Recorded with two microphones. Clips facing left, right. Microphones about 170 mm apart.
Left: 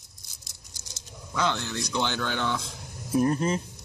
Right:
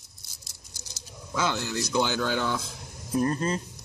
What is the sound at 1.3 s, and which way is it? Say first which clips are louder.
Speech: even; 5° right (ahead or behind).